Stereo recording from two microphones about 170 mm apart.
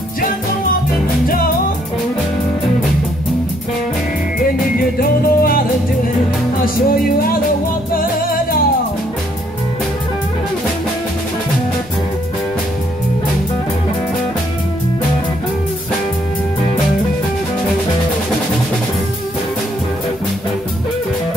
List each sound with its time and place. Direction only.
5.0 s music: 60° left (ahead or behind)